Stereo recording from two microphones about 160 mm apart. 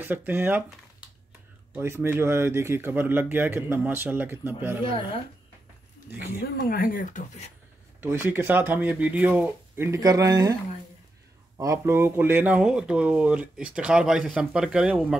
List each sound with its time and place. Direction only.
0.0 s speech: 10° right (ahead or behind)
1.8 s speech: 15° right (ahead or behind)
6.1 s speech: 10° right (ahead or behind)
6.4 s speech: 70° left (ahead or behind); by 7.5 s 50° left (ahead or behind)
8.0 s speech: 15° right (ahead or behind)
11.5 s speech: 20° right (ahead or behind)